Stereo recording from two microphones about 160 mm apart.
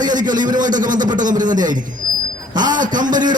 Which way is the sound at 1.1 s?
55° right (ahead or behind).